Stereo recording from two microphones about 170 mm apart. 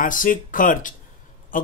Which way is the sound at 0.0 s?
50° left (ahead or behind).